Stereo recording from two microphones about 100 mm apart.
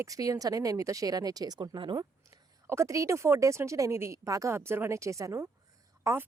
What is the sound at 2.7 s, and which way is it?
Speech, 30° right (ahead or behind).